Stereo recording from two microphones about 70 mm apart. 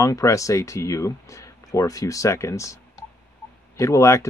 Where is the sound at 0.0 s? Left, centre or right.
Left.